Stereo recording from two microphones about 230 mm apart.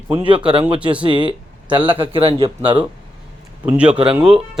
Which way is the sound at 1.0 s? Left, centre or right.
Right.